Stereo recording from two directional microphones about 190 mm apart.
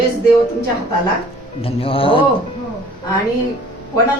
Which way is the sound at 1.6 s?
30° left (ahead or behind).